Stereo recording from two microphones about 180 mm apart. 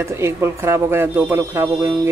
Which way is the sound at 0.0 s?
15° right (ahead or behind).